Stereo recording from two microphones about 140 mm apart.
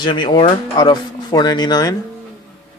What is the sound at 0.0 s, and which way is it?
Speech, 35° left (ahead or behind).